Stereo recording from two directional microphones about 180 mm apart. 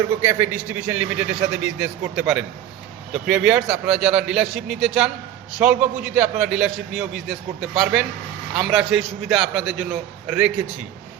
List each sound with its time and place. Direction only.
0.2 s a man's voice: 10° right (ahead or behind)